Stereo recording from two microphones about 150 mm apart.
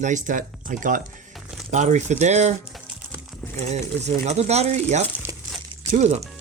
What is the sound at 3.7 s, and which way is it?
Speech, 50° right (ahead or behind).